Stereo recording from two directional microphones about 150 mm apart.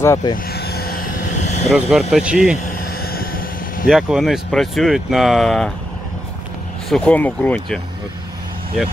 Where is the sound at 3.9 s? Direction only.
Centre (ahead or behind).